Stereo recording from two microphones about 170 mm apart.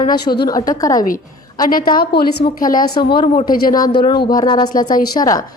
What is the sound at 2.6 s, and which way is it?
A woman's voice, 55° left (ahead or behind).